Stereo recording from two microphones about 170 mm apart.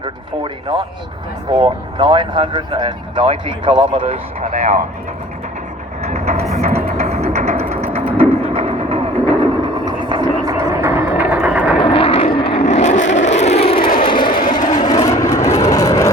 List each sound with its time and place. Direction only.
0.0 s speech: 30° right (ahead or behind)
6.0 s vehicle: 40° right (ahead or behind)
6.5 s music: 40° right (ahead or behind)
8.2 s a sound: 30° right (ahead or behind)
9.8 s vehicle: 25° right (ahead or behind); by 11.8 s 10° right (ahead or behind)
11.8 s vehicle: 30° left (ahead or behind)
13.7 s vehicle: 55° left (ahead or behind)
14.1 s vehicle: 30° left (ahead or behind)
14.4 s vehicle: 55° left (ahead or behind)
14.8 s vehicle: 25° left (ahead or behind)